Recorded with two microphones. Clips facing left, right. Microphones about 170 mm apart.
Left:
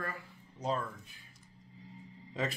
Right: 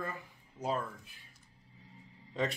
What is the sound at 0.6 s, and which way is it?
Speech, 5° right (ahead or behind).